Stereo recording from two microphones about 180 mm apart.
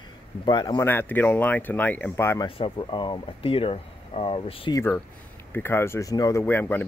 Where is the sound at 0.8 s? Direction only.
10° left (ahead or behind).